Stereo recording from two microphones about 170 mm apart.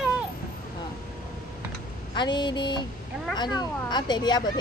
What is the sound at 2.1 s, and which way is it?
Speech, 25° left (ahead or behind).